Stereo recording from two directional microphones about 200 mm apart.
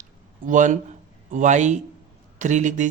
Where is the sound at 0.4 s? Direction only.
40° right (ahead or behind).